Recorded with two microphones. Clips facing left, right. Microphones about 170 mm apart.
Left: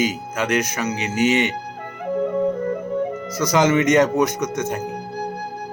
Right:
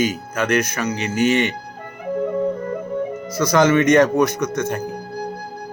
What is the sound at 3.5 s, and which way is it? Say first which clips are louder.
Speech: right 2 dB; 20° left (ahead or behind).